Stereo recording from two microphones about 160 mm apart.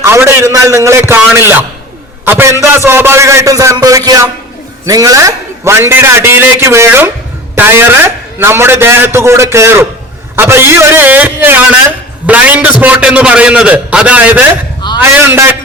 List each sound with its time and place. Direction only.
0.0 s a man's voice: 15° right (ahead or behind)